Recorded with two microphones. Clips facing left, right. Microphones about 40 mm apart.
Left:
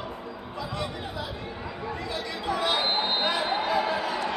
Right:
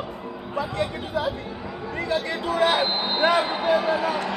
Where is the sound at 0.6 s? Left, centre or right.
Right.